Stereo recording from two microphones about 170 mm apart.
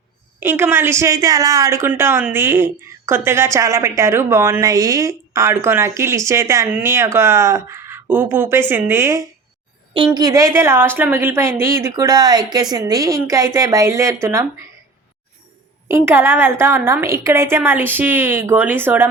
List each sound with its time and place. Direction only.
0.3 s speech: 10° right (ahead or behind)
16.0 s speech: 10° right (ahead or behind)